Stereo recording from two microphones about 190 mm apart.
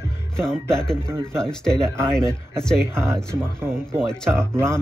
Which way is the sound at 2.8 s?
15° right (ahead or behind).